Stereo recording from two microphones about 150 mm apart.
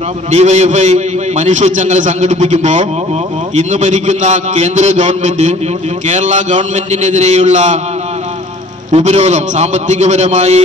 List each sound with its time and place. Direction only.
0.3 s a man's voice: 50° right (ahead or behind)
8.9 s a man's voice: 45° right (ahead or behind)